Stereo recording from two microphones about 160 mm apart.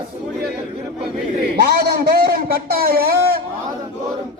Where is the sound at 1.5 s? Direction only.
90° right; by 3.4 s 70° right (ahead or behind).